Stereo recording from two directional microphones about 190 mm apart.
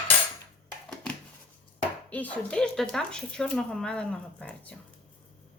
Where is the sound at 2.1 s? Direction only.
5° left (ahead or behind).